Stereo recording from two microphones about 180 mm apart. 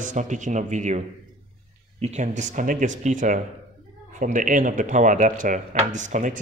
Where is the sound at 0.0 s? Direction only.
45° right (ahead or behind).